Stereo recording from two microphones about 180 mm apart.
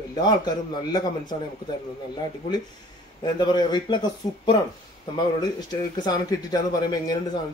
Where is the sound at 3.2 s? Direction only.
25° left (ahead or behind).